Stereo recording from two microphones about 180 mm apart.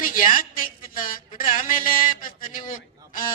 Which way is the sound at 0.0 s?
50° left (ahead or behind).